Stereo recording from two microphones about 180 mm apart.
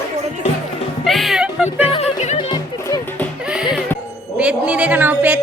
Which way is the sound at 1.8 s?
35° left (ahead or behind).